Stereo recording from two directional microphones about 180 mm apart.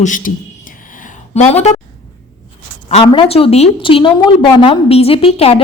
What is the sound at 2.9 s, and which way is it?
A woman's voice, 30° left (ahead or behind).